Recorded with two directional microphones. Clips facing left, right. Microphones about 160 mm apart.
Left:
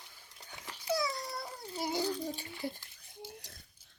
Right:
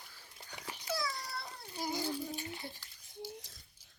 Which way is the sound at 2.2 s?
35° left (ahead or behind).